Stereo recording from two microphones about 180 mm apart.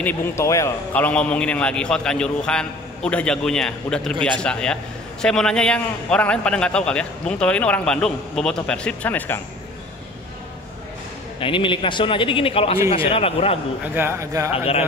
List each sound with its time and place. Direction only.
0.0 s a man's voice: 15° left (ahead or behind)
11.3 s a man's voice: 30° left (ahead or behind)
13.9 s a man's voice: 15° right (ahead or behind)
14.5 s speech: 30° left (ahead or behind)